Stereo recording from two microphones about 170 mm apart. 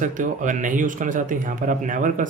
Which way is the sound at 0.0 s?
50° right (ahead or behind).